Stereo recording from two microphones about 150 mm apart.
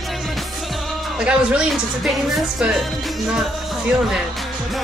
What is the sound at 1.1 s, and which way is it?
A man's voice, 5° right (ahead or behind).